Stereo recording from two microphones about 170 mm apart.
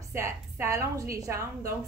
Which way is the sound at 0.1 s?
15° right (ahead or behind).